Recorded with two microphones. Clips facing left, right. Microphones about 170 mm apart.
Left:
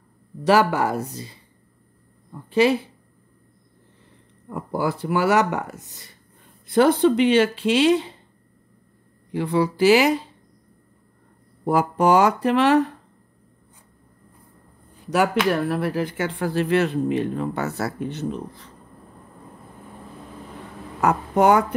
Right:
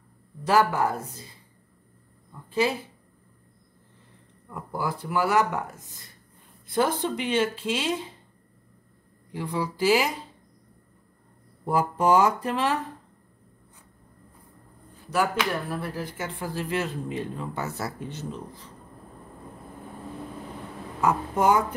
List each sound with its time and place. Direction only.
0.4 s speech: 75° left (ahead or behind)
2.5 s speech: 75° left (ahead or behind)
4.5 s speech: 75° left (ahead or behind)
9.3 s speech: 75° left (ahead or behind)
11.6 s speech: 75° left (ahead or behind)
15.0 s speech: 75° left (ahead or behind)
21.0 s speech: 70° left (ahead or behind)